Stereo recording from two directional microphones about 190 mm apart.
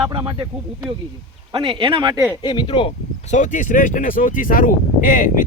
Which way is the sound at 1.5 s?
25° right (ahead or behind).